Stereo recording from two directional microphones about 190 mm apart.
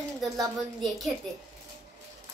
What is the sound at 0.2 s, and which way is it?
Speech, centre (ahead or behind).